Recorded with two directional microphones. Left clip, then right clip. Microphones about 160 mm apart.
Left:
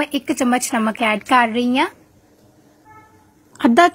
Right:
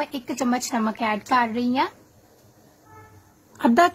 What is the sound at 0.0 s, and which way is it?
A woman's voice, 35° left (ahead or behind).